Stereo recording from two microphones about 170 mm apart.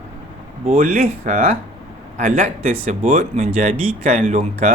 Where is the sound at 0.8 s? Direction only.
55° right (ahead or behind).